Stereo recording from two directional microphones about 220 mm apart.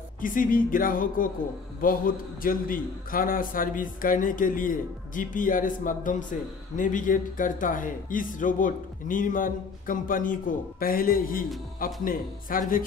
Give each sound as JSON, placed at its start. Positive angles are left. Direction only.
{"t": 0.2, "sound": "speech", "side_deg": 40}